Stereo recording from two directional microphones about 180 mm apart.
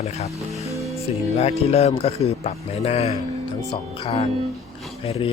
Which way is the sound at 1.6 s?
35° left (ahead or behind).